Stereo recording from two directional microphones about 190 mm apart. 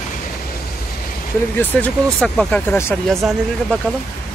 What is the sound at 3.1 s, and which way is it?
Speech, centre (ahead or behind).